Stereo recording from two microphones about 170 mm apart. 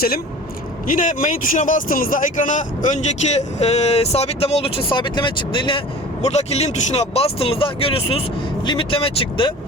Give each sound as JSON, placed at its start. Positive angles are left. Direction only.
{"t": 0.9, "sound": "a man's voice", "side_deg": 50}